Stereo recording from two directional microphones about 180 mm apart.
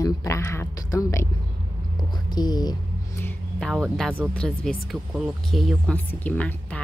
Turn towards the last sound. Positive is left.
turn(degrees=10)  # may be behind; listen again after turning